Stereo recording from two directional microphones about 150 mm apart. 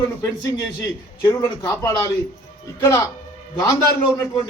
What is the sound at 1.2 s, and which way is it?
A man's voice, 25° left (ahead or behind).